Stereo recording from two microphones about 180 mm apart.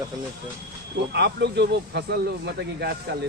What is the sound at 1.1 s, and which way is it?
Speech, 70° right (ahead or behind).